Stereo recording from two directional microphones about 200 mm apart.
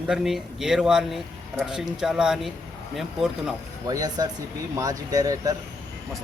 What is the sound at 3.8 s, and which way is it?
Speech, 20° right (ahead or behind).